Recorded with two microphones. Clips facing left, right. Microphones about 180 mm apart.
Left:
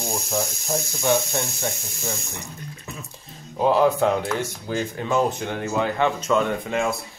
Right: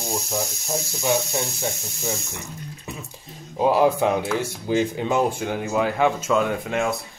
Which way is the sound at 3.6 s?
10° right (ahead or behind).